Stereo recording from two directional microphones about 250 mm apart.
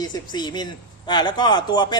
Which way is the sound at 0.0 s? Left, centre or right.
Centre.